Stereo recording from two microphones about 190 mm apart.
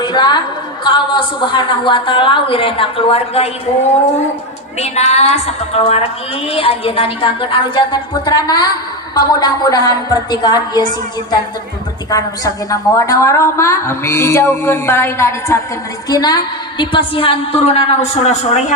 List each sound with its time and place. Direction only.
0.0 s a woman's voice: 20° left (ahead or behind)
4.8 s a woman's voice: 35° left (ahead or behind)
12.7 s a woman's voice: 15° left (ahead or behind); by 18.6 s 35° left (ahead or behind)